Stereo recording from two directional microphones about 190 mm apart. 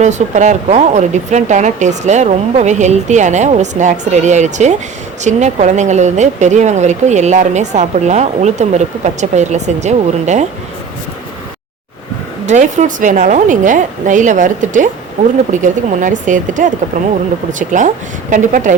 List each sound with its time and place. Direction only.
0.0 s speech: 40° right (ahead or behind)
12.5 s speech: 40° right (ahead or behind)